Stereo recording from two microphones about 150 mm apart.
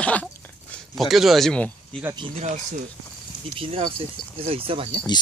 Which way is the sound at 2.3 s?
50° right (ahead or behind).